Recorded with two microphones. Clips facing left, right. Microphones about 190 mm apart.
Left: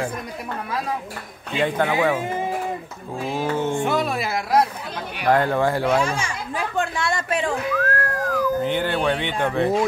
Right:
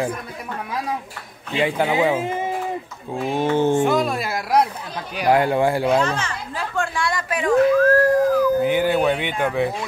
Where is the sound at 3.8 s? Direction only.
Centre (ahead or behind).